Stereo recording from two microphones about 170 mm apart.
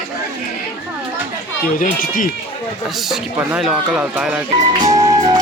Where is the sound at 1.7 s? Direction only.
55° left (ahead or behind).